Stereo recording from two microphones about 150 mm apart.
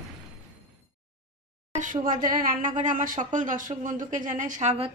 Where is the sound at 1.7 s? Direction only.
60° right (ahead or behind).